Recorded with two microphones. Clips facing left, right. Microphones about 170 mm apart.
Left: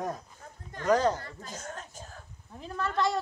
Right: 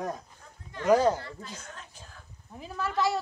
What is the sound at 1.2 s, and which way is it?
Speech, 45° left (ahead or behind).